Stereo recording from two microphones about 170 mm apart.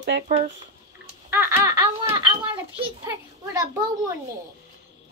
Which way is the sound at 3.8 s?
20° right (ahead or behind).